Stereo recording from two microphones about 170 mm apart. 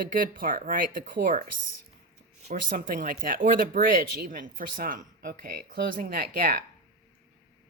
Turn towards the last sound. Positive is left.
turn(degrees=-60)  # may be behind; listen again after turning